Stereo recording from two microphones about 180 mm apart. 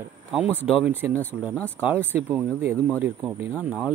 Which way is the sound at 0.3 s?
10° right (ahead or behind).